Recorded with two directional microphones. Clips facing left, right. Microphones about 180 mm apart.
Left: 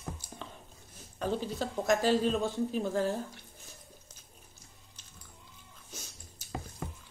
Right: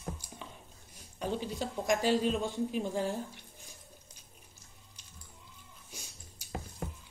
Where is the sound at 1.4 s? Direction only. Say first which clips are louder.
Left 2 dB; 15° right (ahead or behind).